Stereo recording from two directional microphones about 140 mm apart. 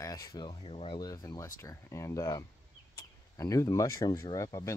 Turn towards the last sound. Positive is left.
turn(degrees=25)  # may be behind; listen again after turning